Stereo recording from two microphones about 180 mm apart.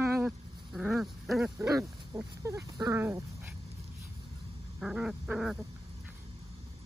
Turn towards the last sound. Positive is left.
turn(degrees=0)  # may be behind; listen again after turning